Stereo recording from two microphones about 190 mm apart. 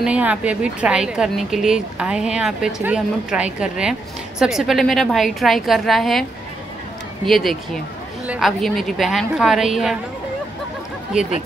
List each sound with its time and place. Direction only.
0.0 s a woman's voice: 5° right (ahead or behind)
7.2 s a woman's voice: centre (ahead or behind)